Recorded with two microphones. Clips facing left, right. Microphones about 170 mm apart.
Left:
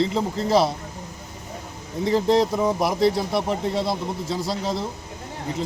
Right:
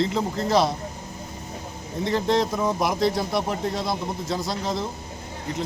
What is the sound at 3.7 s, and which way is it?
Speech, 30° left (ahead or behind).